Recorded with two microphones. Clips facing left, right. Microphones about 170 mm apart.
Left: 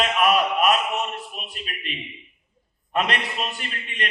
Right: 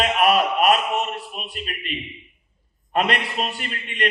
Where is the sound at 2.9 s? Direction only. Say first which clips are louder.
Right 3 dB; 40° right (ahead or behind).